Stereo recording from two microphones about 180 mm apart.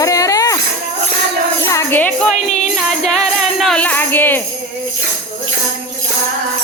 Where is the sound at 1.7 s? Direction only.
10° left (ahead or behind).